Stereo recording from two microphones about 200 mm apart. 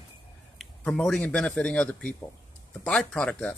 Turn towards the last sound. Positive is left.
turn(degrees=5)  # may be behind; listen again after turning